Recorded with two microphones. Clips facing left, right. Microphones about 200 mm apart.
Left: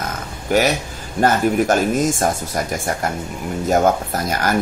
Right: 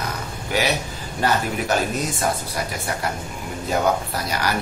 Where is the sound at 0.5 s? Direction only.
45° left (ahead or behind).